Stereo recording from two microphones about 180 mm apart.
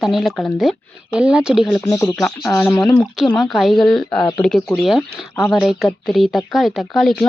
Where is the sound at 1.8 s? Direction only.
15° left (ahead or behind).